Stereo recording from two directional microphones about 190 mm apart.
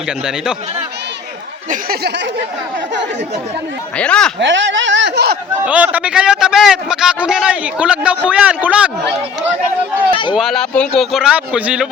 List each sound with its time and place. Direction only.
1.7 s speech: 55° right (ahead or behind)
3.9 s a man's voice: 5° left (ahead or behind)
4.4 s speech: 75° right (ahead or behind); by 5.4 s 60° right (ahead or behind)
5.6 s a man's voice: 10° right (ahead or behind)
10.3 s a man's voice: centre (ahead or behind)